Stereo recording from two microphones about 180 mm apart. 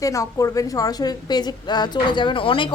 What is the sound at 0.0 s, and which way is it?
A woman's voice, 20° left (ahead or behind).